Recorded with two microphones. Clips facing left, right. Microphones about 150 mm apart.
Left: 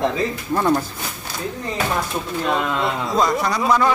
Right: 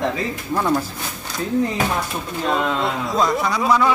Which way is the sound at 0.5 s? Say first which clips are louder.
Left 1 dB; centre (ahead or behind).